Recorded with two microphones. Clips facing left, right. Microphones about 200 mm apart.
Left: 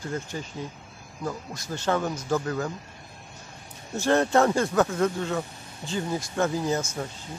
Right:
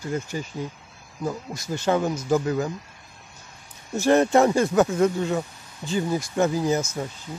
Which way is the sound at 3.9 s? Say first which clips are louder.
Right 3 dB; 15° right (ahead or behind).